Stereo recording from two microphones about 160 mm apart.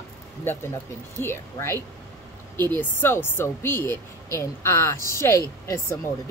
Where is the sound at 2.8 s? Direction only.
15° left (ahead or behind).